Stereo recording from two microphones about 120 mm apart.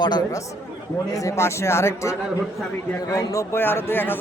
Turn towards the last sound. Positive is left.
turn(degrees=15)  # may be behind; listen again after turning